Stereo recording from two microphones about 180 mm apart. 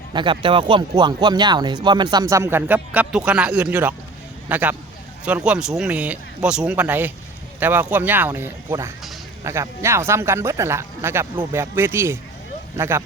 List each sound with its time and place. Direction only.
0.1 s speech: 25° right (ahead or behind)